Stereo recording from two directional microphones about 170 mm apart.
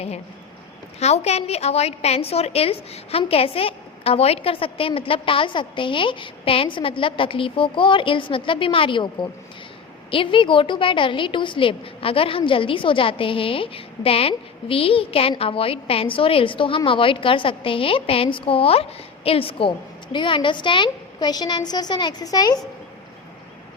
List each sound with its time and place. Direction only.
0.9 s a woman's voice: 40° left (ahead or behind)
10.1 s a woman's voice: 30° left (ahead or behind)